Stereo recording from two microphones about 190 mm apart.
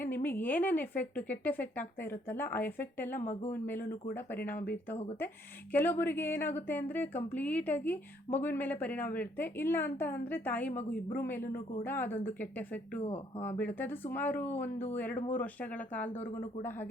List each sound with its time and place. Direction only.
0.0 s a woman's voice: 10° left (ahead or behind)
3.2 s speech: 35° left (ahead or behind)
3.5 s a woman's voice: 10° left (ahead or behind)
16.1 s speech: 30° left (ahead or behind)
16.6 s a woman's voice: 10° left (ahead or behind)